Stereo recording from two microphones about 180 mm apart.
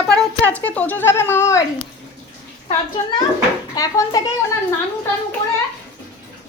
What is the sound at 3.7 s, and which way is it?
Speech, 20° left (ahead or behind).